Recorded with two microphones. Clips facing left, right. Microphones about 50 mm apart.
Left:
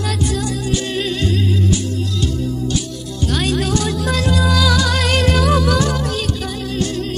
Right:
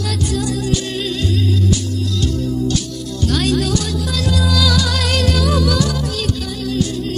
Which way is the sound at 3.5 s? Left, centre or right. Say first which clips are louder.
Even; left.